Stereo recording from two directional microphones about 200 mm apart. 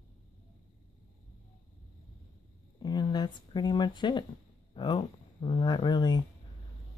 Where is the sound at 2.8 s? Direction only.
20° left (ahead or behind).